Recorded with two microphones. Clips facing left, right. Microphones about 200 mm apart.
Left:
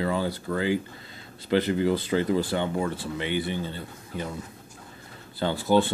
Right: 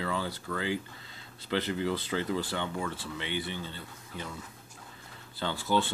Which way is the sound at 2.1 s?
50° left (ahead or behind).